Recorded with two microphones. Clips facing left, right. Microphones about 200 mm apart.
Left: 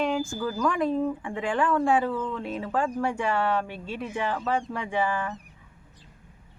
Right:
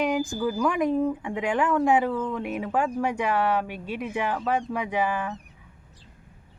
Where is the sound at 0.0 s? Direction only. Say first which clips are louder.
Right 2 dB; 15° right (ahead or behind).